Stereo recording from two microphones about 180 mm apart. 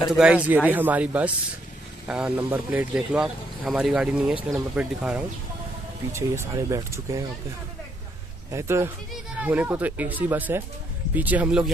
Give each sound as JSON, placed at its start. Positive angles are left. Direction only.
{"t": 0.1, "sound": "speech", "side_deg": -5}
{"t": 8.5, "sound": "speech", "side_deg": -15}